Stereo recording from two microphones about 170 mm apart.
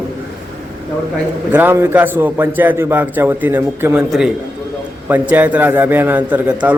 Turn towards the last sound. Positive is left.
turn(degrees=-10)  # may be behind; listen again after turning